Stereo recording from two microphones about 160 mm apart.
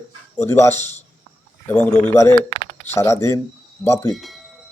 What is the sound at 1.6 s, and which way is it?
Speech, 10° left (ahead or behind).